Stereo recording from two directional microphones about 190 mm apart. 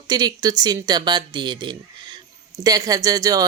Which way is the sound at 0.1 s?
20° right (ahead or behind).